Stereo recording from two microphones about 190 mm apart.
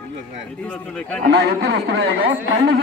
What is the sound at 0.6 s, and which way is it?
Speech, 5° left (ahead or behind).